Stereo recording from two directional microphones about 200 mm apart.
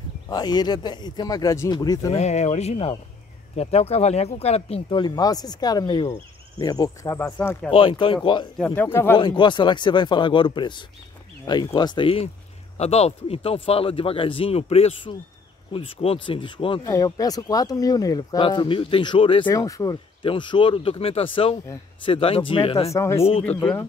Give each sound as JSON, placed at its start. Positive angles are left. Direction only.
{"t": 0.3, "sound": "speech", "side_deg": 20}
{"t": 2.1, "sound": "speech", "side_deg": 35}
{"t": 7.7, "sound": "speech", "side_deg": 25}
{"t": 8.5, "sound": "speech", "side_deg": 10}
{"t": 9.2, "sound": "speech", "side_deg": 25}
{"t": 22.9, "sound": "speech", "side_deg": 15}